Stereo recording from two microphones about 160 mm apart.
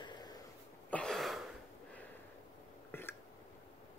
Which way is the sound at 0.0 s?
25° left (ahead or behind).